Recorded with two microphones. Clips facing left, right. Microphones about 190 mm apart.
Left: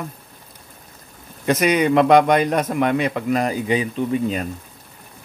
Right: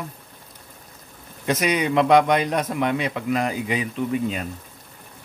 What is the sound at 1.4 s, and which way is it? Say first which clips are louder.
A man's voice: left 5 dB; 50° left (ahead or behind).